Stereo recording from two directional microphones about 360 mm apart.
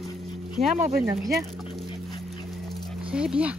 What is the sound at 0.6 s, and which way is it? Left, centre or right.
Speech, centre.